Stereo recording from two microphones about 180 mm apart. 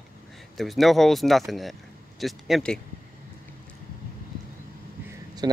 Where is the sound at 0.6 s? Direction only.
Centre (ahead or behind).